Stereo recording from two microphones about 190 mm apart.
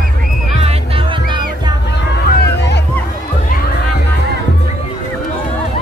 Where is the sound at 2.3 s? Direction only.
60° left (ahead or behind).